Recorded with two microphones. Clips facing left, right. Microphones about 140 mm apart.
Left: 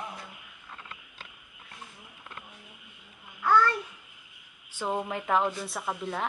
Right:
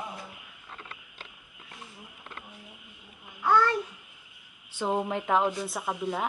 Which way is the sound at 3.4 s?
10° right (ahead or behind).